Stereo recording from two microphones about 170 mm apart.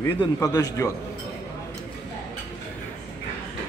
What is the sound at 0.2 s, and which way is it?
Speech, 20° left (ahead or behind).